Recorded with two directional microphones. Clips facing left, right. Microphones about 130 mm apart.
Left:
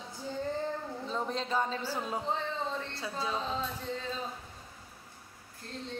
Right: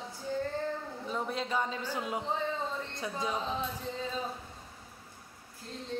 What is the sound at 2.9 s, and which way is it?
Speech, 20° right (ahead or behind).